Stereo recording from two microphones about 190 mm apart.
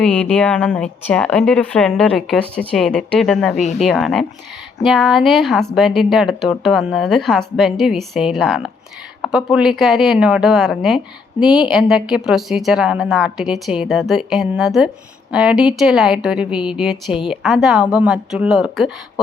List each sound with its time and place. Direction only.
0.0 s speech: 5° left (ahead or behind)
3.6 s speech: 35° left (ahead or behind)
3.8 s speech: centre (ahead or behind)